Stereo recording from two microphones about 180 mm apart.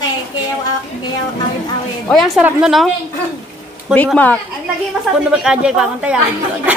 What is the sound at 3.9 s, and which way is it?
Speech, 5° right (ahead or behind).